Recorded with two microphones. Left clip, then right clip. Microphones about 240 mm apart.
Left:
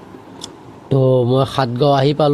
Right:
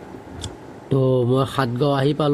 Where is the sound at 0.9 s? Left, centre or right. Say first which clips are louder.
Left 5 dB; left.